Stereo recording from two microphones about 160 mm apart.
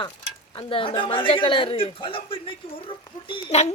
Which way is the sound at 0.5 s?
35° left (ahead or behind).